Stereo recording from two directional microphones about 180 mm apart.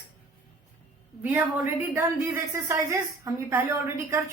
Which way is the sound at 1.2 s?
10° right (ahead or behind).